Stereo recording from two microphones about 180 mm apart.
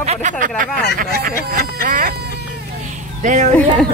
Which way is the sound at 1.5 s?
50° right (ahead or behind).